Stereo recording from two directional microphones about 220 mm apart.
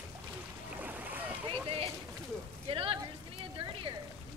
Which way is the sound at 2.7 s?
25° right (ahead or behind).